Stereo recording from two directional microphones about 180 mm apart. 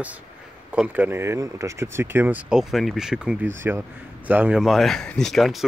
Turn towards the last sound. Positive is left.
turn(degrees=0)  # may be behind; listen again after turning